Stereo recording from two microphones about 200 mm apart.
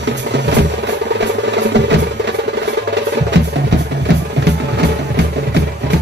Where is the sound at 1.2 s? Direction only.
60° right (ahead or behind).